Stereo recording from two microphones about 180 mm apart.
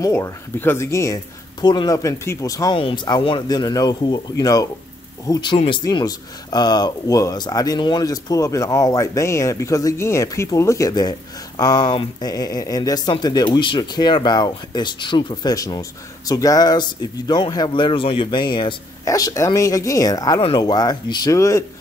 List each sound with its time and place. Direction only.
0.0 s speech: 15° left (ahead or behind)